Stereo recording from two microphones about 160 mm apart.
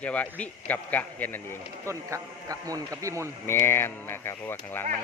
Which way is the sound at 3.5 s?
15° left (ahead or behind).